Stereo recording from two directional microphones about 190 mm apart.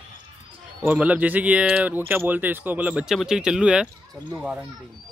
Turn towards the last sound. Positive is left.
turn(degrees=-5)  # may be behind; listen again after turning